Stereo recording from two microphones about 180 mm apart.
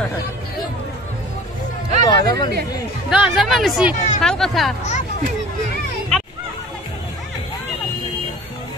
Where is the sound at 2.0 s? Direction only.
25° left (ahead or behind).